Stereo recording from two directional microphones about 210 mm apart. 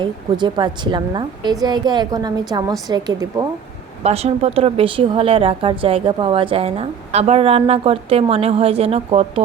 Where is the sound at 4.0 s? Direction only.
30° right (ahead or behind).